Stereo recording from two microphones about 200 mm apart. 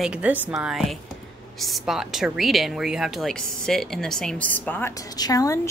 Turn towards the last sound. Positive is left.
turn(degrees=15)  # may be behind; listen again after turning